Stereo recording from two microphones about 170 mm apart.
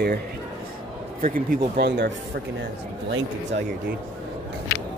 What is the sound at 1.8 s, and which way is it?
Speech, 90° right.